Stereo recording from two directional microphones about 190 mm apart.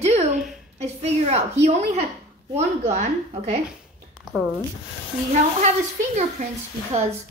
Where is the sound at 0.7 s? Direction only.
35° right (ahead or behind).